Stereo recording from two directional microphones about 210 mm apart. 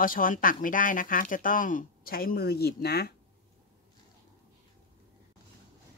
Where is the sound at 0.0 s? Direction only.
40° left (ahead or behind).